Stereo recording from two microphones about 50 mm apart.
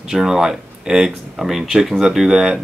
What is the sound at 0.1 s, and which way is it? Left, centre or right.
Speech, centre.